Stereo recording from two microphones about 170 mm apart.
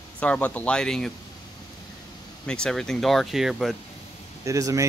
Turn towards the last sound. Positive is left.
turn(degrees=-20)  # may be behind; listen again after turning